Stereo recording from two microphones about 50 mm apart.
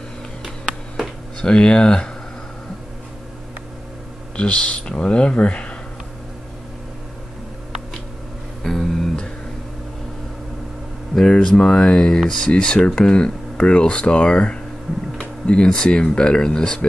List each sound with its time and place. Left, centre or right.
0.9 s a sound: centre
4.4 s speech: left
8.6 s music: centre
11.1 s speech: centre